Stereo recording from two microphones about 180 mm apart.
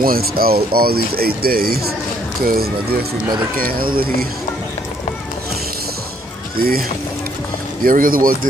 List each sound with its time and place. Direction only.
0.0 s speech: 55° right (ahead or behind)
7.8 s speech: 50° right (ahead or behind)